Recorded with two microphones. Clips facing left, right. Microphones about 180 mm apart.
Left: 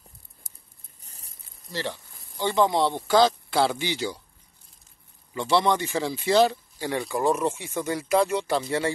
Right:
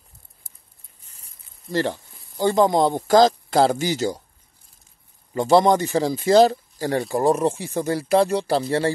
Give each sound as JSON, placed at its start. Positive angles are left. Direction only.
{"t": 1.0, "sound": "a sound", "side_deg": 35}
{"t": 1.7, "sound": "speech", "side_deg": -50}
{"t": 5.3, "sound": "speech", "side_deg": -45}